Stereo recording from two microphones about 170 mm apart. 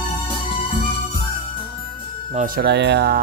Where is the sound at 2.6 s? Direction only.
90° right.